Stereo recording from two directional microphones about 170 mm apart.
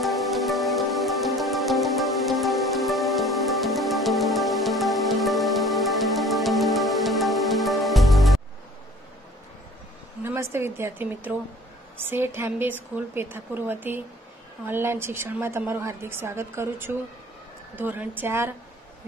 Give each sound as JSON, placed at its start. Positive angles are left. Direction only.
{"t": 0.0, "sound": "music", "side_deg": 0}
{"t": 10.2, "sound": "a sound", "side_deg": -15}
{"t": 12.0, "sound": "a woman's voice", "side_deg": -15}